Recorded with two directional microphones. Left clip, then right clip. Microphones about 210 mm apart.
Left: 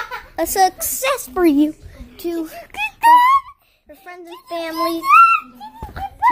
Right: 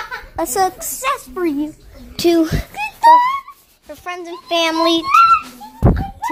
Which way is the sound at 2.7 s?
40° left (ahead or behind).